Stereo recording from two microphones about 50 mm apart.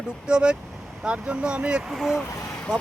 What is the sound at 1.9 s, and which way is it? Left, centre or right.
Speech, centre.